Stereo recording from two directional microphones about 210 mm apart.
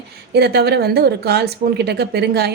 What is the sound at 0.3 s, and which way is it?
A woman's voice, 50° right (ahead or behind).